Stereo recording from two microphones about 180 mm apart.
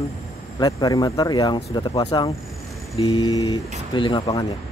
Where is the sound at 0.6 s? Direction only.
20° left (ahead or behind).